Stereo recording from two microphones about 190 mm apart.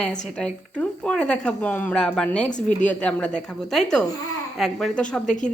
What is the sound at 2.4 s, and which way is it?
Speech, 40° left (ahead or behind).